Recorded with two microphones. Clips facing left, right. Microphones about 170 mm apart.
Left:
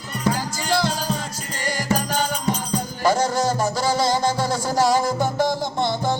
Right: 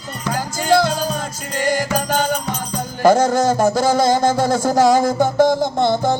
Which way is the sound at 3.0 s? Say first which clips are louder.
Right 7 dB; 50° right (ahead or behind).